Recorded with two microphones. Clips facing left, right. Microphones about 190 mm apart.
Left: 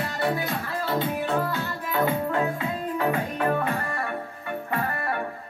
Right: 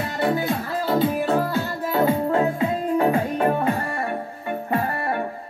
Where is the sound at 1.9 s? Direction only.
30° right (ahead or behind).